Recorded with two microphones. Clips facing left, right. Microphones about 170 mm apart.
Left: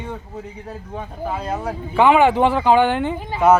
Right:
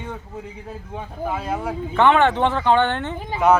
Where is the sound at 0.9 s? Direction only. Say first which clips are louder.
Even; 5° right (ahead or behind).